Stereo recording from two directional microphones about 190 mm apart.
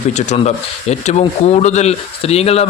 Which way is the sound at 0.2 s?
35° left (ahead or behind).